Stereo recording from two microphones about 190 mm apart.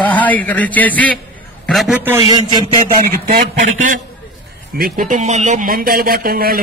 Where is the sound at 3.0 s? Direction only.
45° right (ahead or behind).